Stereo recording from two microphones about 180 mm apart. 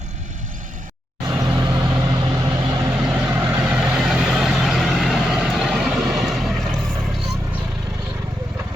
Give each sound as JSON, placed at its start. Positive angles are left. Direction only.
{"t": 1.3, "sound": "vehicle", "side_deg": -20}
{"t": 3.0, "sound": "vehicle", "side_deg": -5}